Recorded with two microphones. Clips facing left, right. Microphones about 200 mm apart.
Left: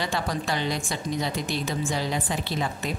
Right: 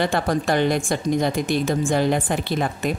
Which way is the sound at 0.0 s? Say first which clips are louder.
Right 7 dB; 55° right (ahead or behind).